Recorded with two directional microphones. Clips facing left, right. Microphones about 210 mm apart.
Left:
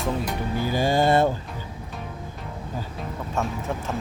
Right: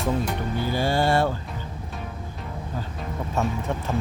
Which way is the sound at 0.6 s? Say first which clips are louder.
Left 2 dB; 15° left (ahead or behind).